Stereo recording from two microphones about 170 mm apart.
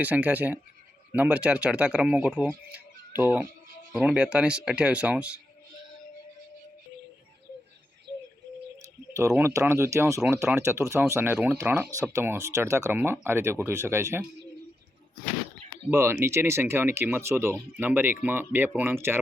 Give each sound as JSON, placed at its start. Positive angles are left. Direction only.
{"t": 0.0, "sound": "speech", "side_deg": -10}
{"t": 8.8, "sound": "speech", "side_deg": -20}
{"t": 15.9, "sound": "speech", "side_deg": -15}